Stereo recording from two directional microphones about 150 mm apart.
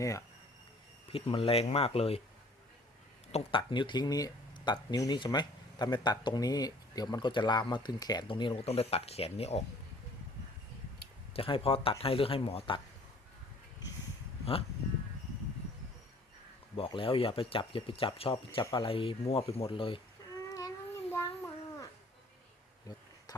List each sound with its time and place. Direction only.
0.0 s speech: 20° left (ahead or behind)
1.1 s speech: 40° left (ahead or behind)
3.6 s speech: 30° left (ahead or behind)
11.3 s speech: 35° left (ahead or behind)
16.7 s speech: 35° left (ahead or behind)
20.5 s a sound: 20° left (ahead or behind)
22.9 s speech: 25° left (ahead or behind)